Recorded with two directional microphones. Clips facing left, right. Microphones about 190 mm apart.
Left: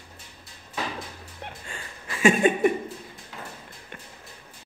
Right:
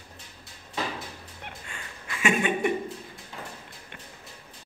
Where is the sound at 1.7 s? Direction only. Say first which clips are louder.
Left 2 dB; 35° left (ahead or behind).